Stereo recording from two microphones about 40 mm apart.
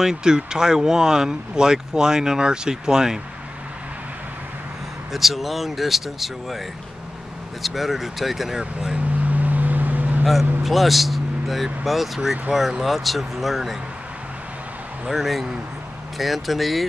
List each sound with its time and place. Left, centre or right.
0.0 s speech: centre
5.1 s speech: centre
7.6 s speech: centre
8.9 s vehicle: right
10.6 s speech: centre
15.0 s speech: centre